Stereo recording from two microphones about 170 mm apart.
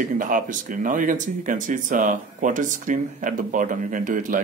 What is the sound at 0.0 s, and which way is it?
Speech, 50° right (ahead or behind).